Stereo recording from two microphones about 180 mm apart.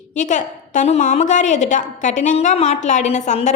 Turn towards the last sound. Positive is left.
turn(degrees=40)  # may be behind; listen again after turning